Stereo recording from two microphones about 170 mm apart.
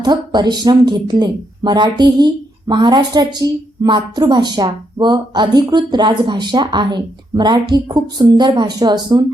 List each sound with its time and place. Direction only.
0.0 s speech: 25° right (ahead or behind)